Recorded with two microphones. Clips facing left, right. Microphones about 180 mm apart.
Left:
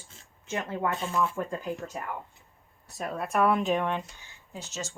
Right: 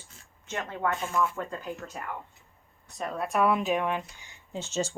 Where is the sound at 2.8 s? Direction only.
5° left (ahead or behind).